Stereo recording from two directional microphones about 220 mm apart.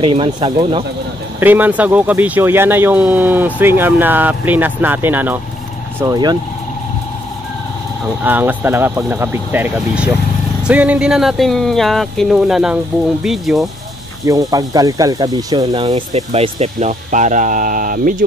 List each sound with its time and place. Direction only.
0.0 s speech: 25° right (ahead or behind)
1.4 s speech: 10° right (ahead or behind)
8.2 s speech: 10° right (ahead or behind)
14.2 s speech: 15° right (ahead or behind); by 18.1 s 40° right (ahead or behind)